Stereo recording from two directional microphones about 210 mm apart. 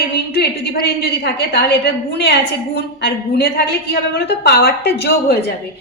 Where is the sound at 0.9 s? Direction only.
55° left (ahead or behind).